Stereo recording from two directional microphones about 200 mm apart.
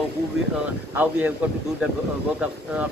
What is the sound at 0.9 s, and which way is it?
Speech, 10° right (ahead or behind).